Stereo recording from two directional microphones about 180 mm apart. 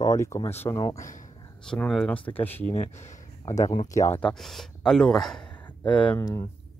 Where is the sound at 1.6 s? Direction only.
5° left (ahead or behind).